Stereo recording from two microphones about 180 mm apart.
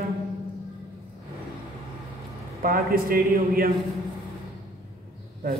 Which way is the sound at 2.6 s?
50° right (ahead or behind).